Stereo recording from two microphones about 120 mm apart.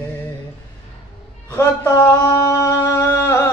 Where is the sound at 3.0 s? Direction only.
20° left (ahead or behind).